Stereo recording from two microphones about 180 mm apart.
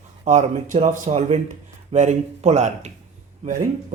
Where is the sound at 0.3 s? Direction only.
40° right (ahead or behind).